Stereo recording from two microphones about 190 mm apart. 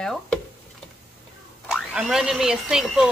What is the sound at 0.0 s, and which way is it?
Stir, 5° left (ahead or behind).